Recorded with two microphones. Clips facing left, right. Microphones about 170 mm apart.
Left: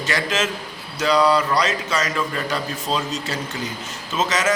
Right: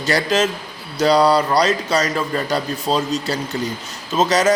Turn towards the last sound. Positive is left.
turn(degrees=-35)  # may be behind; listen again after turning